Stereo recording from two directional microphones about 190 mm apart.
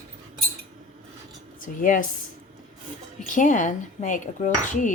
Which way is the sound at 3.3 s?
40° left (ahead or behind).